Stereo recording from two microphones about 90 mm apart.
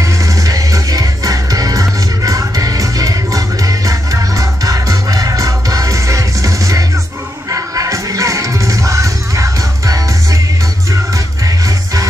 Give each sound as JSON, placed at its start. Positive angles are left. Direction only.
{"t": 0.0, "sound": "music", "side_deg": -40}
{"t": 11.4, "sound": "music", "side_deg": -40}